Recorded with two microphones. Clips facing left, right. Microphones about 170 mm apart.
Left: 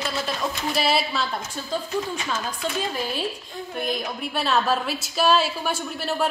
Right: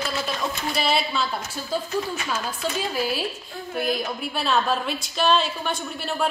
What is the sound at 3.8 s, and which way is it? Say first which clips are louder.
A woman's voice: right 2 dB; centre (ahead or behind).